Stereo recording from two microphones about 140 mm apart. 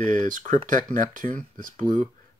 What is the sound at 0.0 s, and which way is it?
Speech, 65° right (ahead or behind).